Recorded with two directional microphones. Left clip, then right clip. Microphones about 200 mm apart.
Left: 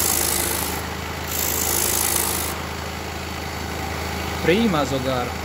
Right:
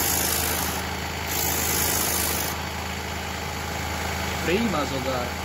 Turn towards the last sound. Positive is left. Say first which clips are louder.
# left 5 dB
turn(degrees=50)  # may be behind; listen again after turning